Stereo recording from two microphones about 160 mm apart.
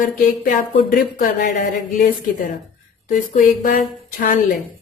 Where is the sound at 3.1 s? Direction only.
55° left (ahead or behind).